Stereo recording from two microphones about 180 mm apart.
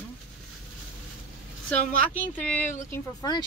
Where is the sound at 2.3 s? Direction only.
10° left (ahead or behind).